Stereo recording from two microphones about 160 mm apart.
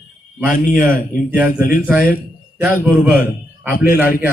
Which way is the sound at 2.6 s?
10° right (ahead or behind).